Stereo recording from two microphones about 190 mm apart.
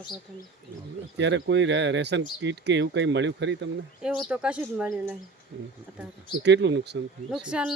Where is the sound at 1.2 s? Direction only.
70° right (ahead or behind).